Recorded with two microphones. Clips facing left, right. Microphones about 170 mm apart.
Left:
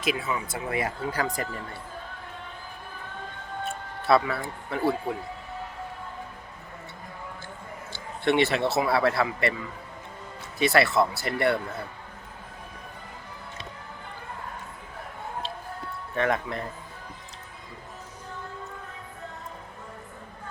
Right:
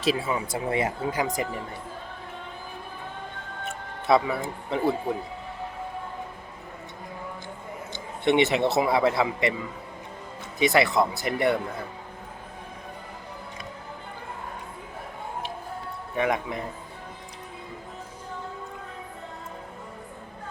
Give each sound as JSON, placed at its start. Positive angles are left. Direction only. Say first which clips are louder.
{"t": 0.0, "sound": "speech", "louder": "right 3 dB", "side_deg": -30}
{"t": 3.6, "sound": "speech", "louder": "left 2 dB", "side_deg": -20}
{"t": 7.9, "sound": "speech", "louder": "right 2 dB", "side_deg": -20}
{"t": 10.6, "sound": "speech", "louder": "right 1 dB", "side_deg": -20}
{"t": 16.1, "sound": "speech", "louder": "even", "side_deg": -15}